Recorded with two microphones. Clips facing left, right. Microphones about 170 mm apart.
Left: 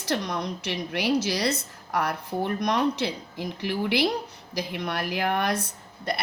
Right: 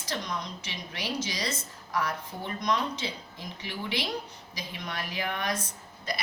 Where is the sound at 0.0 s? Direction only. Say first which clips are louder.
Left 7 dB; 65° left (ahead or behind).